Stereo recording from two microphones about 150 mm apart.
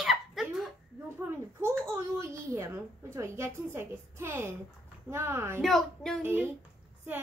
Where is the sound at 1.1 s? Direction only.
15° right (ahead or behind).